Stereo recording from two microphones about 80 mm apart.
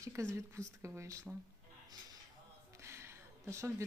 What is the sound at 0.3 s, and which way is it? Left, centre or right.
Speech, right.